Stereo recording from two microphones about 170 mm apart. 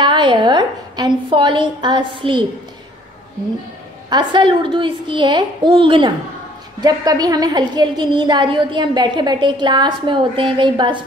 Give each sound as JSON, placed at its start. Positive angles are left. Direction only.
{"t": 0.0, "sound": "a woman's voice", "side_deg": -30}
{"t": 4.1, "sound": "a woman's voice", "side_deg": -25}